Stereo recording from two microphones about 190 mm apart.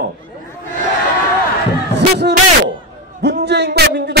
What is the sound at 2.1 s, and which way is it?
A man's voice, 60° right (ahead or behind).